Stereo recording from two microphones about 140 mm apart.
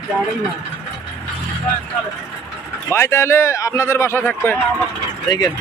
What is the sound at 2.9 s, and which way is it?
Speech, 20° left (ahead or behind).